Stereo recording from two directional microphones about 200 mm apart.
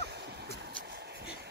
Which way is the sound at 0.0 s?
55° right (ahead or behind).